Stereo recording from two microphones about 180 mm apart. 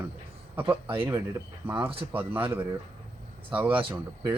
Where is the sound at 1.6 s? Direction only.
10° right (ahead or behind).